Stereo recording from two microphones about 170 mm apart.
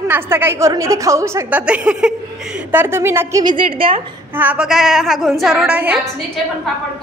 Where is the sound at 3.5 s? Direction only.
30° right (ahead or behind).